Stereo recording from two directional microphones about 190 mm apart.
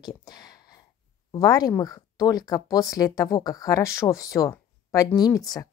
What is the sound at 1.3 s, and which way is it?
Speech, 20° left (ahead or behind).